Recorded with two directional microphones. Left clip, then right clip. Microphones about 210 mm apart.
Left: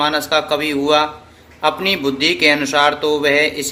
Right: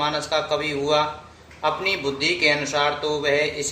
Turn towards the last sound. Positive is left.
turn(degrees=45)  # may be behind; listen again after turning